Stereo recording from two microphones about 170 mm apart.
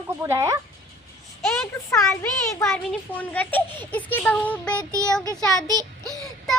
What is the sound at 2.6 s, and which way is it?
A child's voice, 5° left (ahead or behind).